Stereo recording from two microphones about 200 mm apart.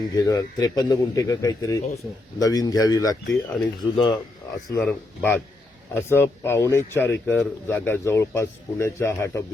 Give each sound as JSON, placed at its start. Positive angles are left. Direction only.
{"t": 0.2, "sound": "speech", "side_deg": 20}
{"t": 4.8, "sound": "speech", "side_deg": 5}